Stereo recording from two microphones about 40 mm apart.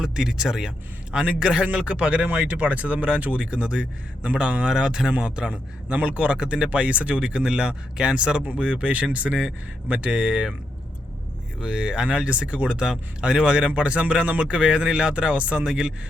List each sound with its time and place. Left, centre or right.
0.0 s speech: centre
1.2 s speech: right
6.0 s speech: right
11.6 s speech: right